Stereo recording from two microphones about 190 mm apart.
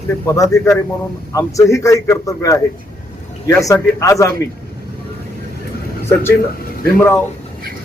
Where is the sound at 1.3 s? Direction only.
15° left (ahead or behind).